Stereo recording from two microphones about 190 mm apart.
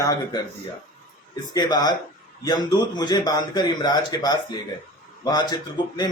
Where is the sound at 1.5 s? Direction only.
20° left (ahead or behind).